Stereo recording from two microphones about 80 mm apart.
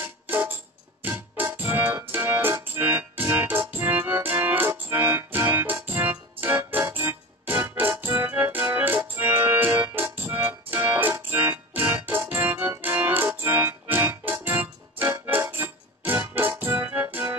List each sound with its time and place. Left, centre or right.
0.0 s music: right
2.1 s keyboard: right
13.4 s music: right